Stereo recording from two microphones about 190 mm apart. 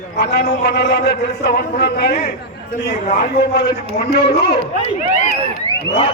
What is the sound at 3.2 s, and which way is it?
Speech, 60° left (ahead or behind).